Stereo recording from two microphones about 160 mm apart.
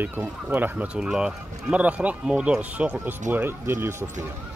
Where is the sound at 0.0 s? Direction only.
10° right (ahead or behind).